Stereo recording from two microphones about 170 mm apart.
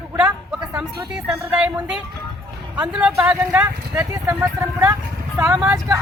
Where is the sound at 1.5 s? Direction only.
5° right (ahead or behind).